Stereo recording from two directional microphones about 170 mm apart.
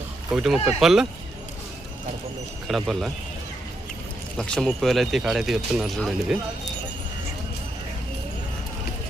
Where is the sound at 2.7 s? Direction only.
Centre (ahead or behind).